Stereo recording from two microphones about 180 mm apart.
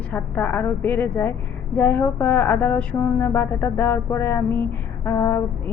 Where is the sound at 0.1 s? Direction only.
10° left (ahead or behind).